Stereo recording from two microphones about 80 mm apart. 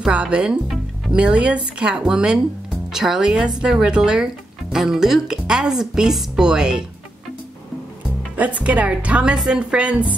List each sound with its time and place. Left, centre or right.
0.0 s speech: centre
8.4 s speech: centre